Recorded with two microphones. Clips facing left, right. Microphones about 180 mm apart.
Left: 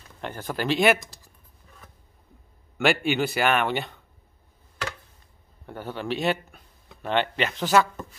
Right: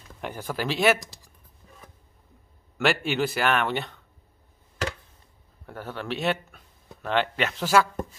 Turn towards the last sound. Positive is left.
turn(degrees=-5)  # may be behind; listen again after turning